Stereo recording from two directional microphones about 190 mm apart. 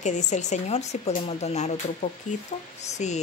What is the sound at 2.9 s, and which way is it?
Speech, 35° left (ahead or behind).